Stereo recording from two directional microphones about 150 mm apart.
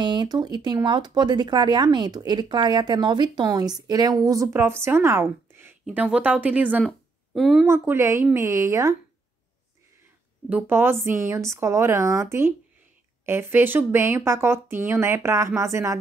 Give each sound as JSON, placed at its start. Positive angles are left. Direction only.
{"t": 0.0, "sound": "speech", "side_deg": -30}
{"t": 5.9, "sound": "speech", "side_deg": -5}
{"t": 6.8, "sound": "speech", "side_deg": 0}
{"t": 7.6, "sound": "speech", "side_deg": -15}
{"t": 10.5, "sound": "speech", "side_deg": -15}